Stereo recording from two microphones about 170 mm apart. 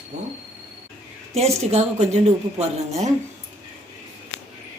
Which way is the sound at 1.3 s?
40° right (ahead or behind).